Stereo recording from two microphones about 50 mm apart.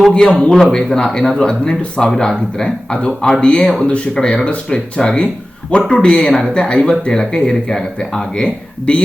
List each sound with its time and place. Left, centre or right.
0.1 s speech: centre